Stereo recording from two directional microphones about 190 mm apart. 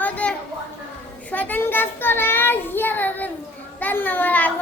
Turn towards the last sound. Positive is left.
turn(degrees=10)  # may be behind; listen again after turning